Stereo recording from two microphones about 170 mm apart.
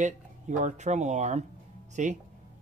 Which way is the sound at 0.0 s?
45° right (ahead or behind).